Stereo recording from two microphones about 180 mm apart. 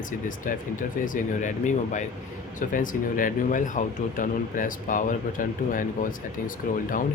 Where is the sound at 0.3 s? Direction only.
45° left (ahead or behind).